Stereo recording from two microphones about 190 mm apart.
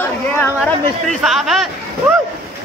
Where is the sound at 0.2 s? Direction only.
10° left (ahead or behind).